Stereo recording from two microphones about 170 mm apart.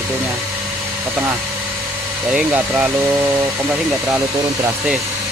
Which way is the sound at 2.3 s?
5° right (ahead or behind).